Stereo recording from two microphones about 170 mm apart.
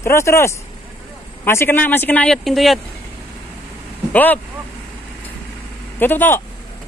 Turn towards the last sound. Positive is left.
turn(degrees=10)  # may be behind; listen again after turning